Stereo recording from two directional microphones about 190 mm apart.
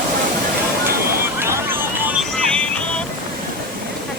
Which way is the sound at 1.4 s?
15° right (ahead or behind).